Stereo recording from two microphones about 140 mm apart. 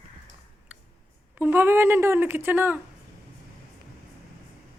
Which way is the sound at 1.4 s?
15° right (ahead or behind).